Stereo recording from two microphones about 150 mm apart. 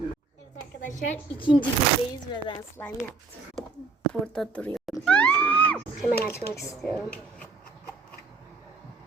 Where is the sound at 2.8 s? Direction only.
15° left (ahead or behind).